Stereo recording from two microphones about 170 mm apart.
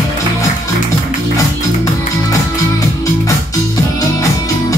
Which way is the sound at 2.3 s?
20° left (ahead or behind).